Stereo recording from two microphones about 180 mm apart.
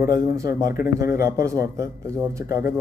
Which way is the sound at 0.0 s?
15° right (ahead or behind).